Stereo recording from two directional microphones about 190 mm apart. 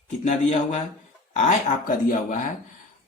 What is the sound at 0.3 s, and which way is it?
Speech, 40° left (ahead or behind).